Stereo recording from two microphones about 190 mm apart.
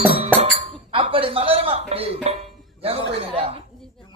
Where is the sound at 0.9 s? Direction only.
30° right (ahead or behind).